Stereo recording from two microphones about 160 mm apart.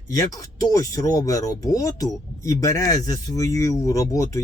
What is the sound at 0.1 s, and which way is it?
Speech, 20° left (ahead or behind).